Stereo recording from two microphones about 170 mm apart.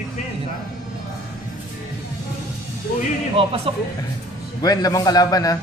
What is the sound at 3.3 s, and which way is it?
Speech, 35° right (ahead or behind).